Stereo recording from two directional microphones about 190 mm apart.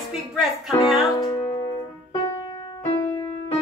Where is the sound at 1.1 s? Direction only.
25° left (ahead or behind).